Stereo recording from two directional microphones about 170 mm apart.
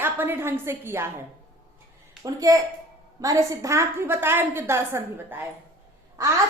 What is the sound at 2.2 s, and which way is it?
A woman's voice, 20° right (ahead or behind).